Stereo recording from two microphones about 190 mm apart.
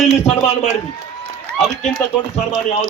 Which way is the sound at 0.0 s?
35° left (ahead or behind).